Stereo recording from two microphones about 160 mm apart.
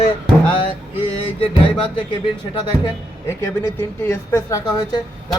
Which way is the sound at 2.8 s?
15° left (ahead or behind).